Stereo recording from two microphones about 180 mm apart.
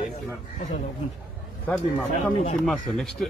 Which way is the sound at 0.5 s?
45° left (ahead or behind).